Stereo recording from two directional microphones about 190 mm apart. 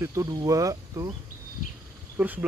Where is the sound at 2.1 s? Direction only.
10° right (ahead or behind).